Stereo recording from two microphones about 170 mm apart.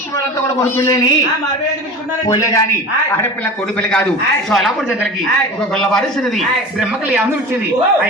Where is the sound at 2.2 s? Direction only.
20° left (ahead or behind).